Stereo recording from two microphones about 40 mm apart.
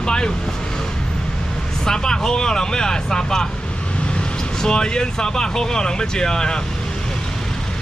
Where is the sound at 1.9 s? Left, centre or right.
Centre.